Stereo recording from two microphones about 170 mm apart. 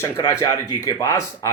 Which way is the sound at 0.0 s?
15° left (ahead or behind).